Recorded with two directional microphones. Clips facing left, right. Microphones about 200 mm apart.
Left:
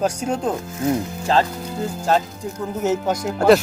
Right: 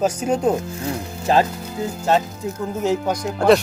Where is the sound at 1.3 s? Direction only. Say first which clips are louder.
Right 2 dB; 15° right (ahead or behind).